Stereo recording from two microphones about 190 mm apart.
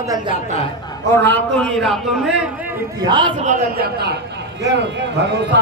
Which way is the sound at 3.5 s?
55° right (ahead or behind).